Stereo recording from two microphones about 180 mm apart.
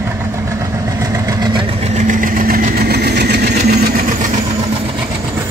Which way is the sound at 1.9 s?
45° right (ahead or behind).